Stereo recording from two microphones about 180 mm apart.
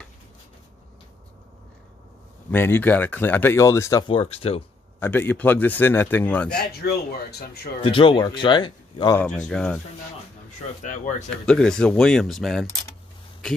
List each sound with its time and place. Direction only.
2.5 s speech: 10° left (ahead or behind)
4.1 s speech: 30° left (ahead or behind)
5.0 s speech: 10° left (ahead or behind)
6.7 s speech: 60° left (ahead or behind)
7.8 s speech: 30° left (ahead or behind)
9.1 s speech: 5° left (ahead or behind)
10.8 s speech: 45° left (ahead or behind)
11.4 s speech: 5° left (ahead or behind)